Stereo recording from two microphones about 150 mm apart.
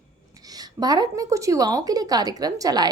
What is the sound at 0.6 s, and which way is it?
Speech, 25° right (ahead or behind).